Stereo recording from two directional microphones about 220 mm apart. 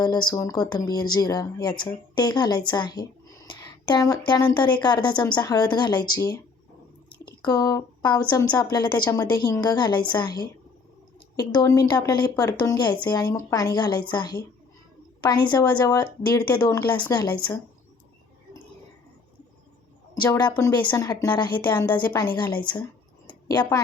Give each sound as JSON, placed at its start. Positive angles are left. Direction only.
{"t": 0.0, "sound": "speech", "side_deg": 20}
{"t": 7.4, "sound": "a woman's voice", "side_deg": 15}
{"t": 20.2, "sound": "a woman's voice", "side_deg": 15}
{"t": 22.6, "sound": "a sound", "side_deg": 20}